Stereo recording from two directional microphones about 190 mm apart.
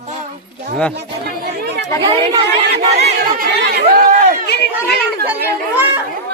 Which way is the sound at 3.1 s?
55° right (ahead or behind).